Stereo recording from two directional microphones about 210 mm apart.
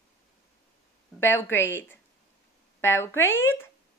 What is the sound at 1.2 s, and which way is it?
Speech, 10° left (ahead or behind).